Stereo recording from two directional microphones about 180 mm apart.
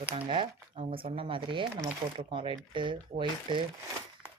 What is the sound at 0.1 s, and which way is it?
Speech, 30° right (ahead or behind).